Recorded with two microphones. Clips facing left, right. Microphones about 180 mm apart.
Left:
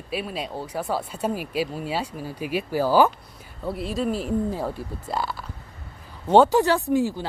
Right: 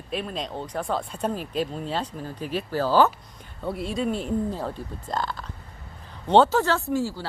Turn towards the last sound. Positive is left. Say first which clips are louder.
# left 4 dB
turn(degrees=20)  # may be behind; listen again after turning